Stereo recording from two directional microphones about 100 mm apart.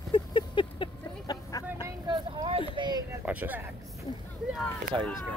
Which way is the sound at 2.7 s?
50° right (ahead or behind).